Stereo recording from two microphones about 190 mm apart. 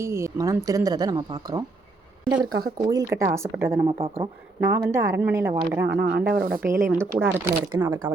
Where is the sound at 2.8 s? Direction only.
15° right (ahead or behind).